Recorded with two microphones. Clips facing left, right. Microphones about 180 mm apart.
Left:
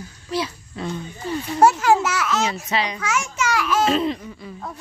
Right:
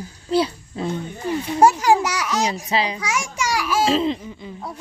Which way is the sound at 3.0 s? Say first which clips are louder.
Left 1 dB; 10° right (ahead or behind).